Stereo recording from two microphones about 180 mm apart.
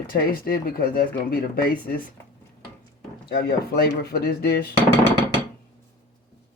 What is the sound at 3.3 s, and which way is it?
Speech, 60° left (ahead or behind).